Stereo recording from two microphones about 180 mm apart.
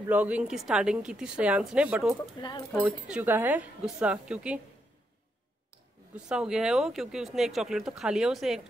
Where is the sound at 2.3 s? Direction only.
25° left (ahead or behind).